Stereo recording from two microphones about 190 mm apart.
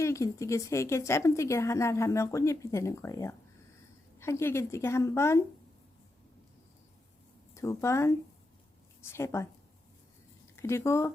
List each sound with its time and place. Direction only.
0.0 s speech: 15° left (ahead or behind)
7.5 s a woman's voice: 15° left (ahead or behind)